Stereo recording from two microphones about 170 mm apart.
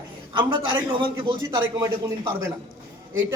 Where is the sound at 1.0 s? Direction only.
30° right (ahead or behind).